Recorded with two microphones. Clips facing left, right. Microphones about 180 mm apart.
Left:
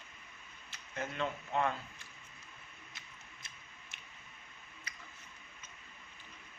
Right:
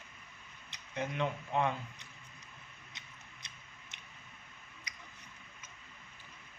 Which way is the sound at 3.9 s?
20° right (ahead or behind).